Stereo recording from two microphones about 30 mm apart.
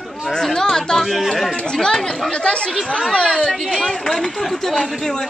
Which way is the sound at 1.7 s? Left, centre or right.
Left.